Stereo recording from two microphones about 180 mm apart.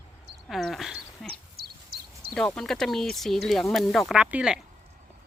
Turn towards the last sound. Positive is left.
turn(degrees=-5)  # may be behind; listen again after turning